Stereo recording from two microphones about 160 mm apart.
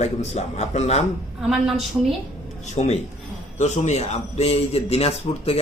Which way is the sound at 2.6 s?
45° left (ahead or behind).